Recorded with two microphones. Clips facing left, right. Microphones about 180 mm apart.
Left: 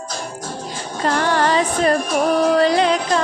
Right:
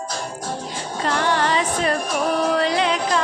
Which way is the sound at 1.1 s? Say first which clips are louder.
Left 3 dB; 45° left (ahead or behind).